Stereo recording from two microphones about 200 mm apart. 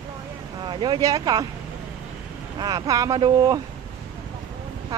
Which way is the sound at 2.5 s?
20° right (ahead or behind).